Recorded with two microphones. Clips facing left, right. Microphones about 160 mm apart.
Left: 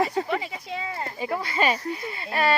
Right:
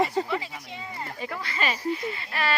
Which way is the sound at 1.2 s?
25° left (ahead or behind).